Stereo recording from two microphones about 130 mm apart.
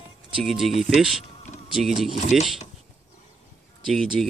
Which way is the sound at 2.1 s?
65° left (ahead or behind).